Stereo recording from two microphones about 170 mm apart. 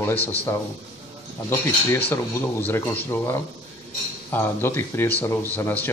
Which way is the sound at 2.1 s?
15° left (ahead or behind).